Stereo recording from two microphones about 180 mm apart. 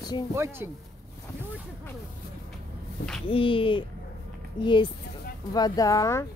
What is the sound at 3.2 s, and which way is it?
Speech, 30° left (ahead or behind).